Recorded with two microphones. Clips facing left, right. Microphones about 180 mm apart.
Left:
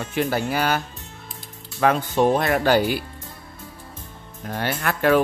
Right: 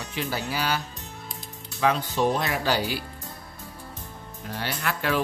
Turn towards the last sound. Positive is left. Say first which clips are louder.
# left 7 dB
turn(degrees=55)  # may be behind; listen again after turning